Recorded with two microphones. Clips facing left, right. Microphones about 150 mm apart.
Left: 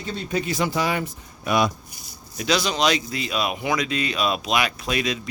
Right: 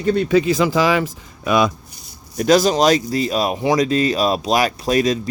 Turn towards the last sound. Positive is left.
turn(degrees=-40)  # may be behind; listen again after turning